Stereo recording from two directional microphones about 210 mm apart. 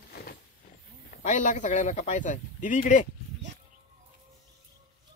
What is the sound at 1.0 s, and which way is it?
A man's voice, 35° left (ahead or behind).